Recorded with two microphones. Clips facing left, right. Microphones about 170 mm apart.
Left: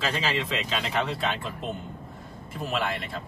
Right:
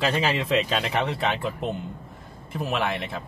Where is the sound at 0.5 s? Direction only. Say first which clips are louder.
Right 5 dB; 65° right (ahead or behind).